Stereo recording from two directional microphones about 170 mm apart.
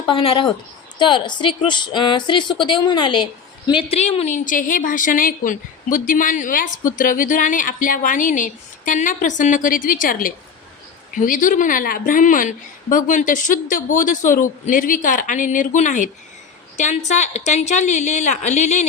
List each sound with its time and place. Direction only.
0.1 s a woman's voice: 30° left (ahead or behind)